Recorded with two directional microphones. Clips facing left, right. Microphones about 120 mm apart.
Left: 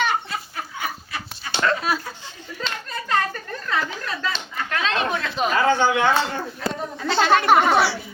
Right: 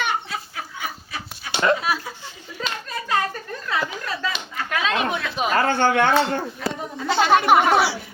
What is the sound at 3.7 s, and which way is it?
Slap, 10° right (ahead or behind).